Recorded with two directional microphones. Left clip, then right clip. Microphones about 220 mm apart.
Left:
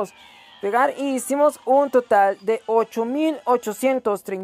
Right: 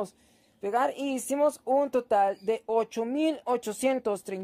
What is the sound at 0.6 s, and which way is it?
Speech, 15° left (ahead or behind).